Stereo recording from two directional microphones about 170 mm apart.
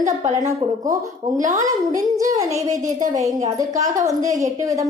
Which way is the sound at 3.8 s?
20° right (ahead or behind).